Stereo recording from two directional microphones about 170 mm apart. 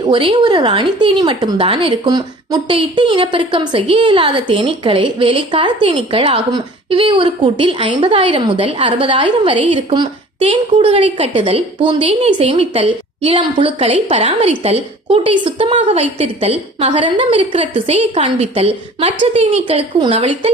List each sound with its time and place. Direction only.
0.0 s a woman's voice: 30° right (ahead or behind)